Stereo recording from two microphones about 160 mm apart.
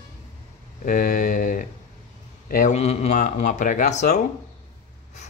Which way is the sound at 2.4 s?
60° left (ahead or behind).